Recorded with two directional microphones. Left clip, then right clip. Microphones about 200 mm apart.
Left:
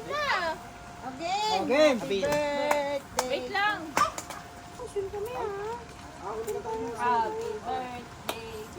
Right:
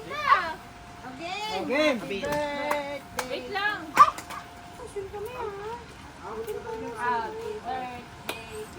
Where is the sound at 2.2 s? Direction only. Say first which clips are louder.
Left 1 dB; 30° left (ahead or behind).